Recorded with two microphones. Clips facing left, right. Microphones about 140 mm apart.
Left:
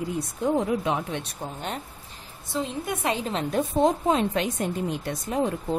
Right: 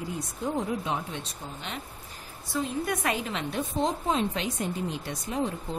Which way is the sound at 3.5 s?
55° left (ahead or behind).